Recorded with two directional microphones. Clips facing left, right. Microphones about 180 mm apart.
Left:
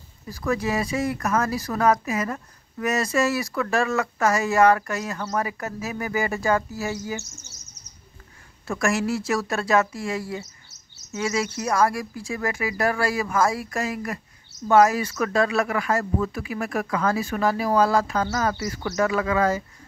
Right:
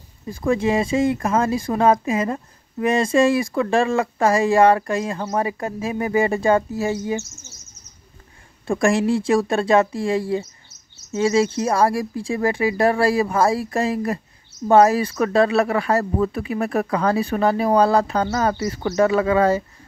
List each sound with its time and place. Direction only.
0.3 s speech: 25° right (ahead or behind)
8.6 s speech: 30° right (ahead or behind)